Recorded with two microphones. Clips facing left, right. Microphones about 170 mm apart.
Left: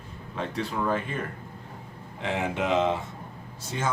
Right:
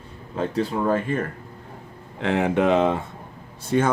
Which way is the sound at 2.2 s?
60° right (ahead or behind).